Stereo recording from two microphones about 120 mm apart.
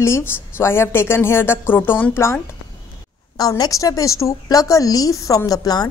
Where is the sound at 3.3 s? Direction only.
30° left (ahead or behind).